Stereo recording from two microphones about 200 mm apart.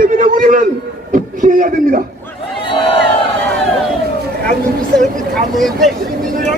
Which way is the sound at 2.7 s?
25° left (ahead or behind).